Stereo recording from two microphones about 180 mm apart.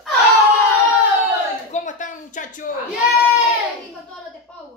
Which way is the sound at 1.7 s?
45° left (ahead or behind).